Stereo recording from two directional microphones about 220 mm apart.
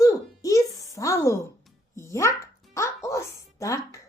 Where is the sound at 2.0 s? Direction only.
15° left (ahead or behind).